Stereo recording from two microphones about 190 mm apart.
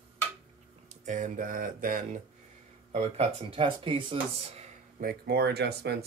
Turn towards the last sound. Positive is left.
turn(degrees=-60)  # may be behind; listen again after turning